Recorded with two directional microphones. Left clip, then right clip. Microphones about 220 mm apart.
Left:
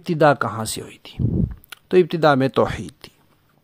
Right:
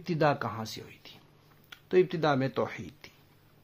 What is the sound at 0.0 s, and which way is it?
Speech, 45° left (ahead or behind).